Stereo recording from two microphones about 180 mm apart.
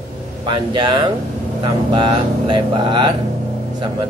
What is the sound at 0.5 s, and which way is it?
Speech, 25° right (ahead or behind).